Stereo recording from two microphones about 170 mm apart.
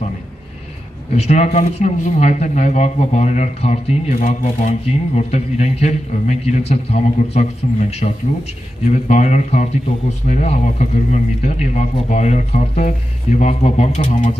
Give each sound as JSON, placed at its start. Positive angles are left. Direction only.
{"t": 1.1, "sound": "a man's voice", "side_deg": 40}